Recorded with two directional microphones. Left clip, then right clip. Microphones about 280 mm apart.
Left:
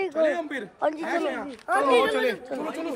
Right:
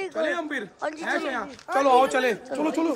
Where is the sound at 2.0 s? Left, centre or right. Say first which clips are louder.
Right 2 dB; right.